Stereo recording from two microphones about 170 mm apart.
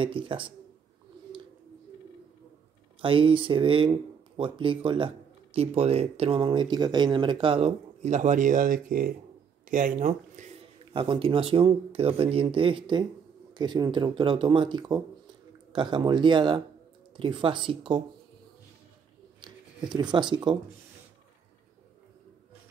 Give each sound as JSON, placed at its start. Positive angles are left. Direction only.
{"t": 0.0, "sound": "speech", "side_deg": -30}
{"t": 3.0, "sound": "speech", "side_deg": -30}
{"t": 10.9, "sound": "speech", "side_deg": -30}
{"t": 19.4, "sound": "speech", "side_deg": -25}